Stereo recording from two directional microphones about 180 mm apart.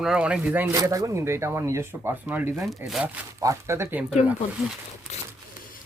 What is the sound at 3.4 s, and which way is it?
Speech, 15° right (ahead or behind).